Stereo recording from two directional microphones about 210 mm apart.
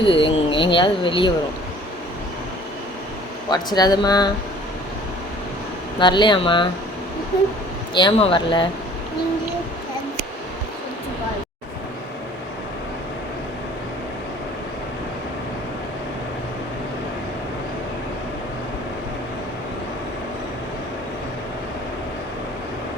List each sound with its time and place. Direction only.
0.0 s speech: 25° left (ahead or behind)
3.5 s speech: 20° left (ahead or behind)
6.0 s speech: 20° left (ahead or behind)
7.9 s speech: 25° left (ahead or behind)